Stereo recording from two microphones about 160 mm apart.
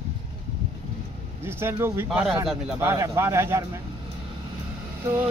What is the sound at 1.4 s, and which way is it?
Speech, 15° right (ahead or behind).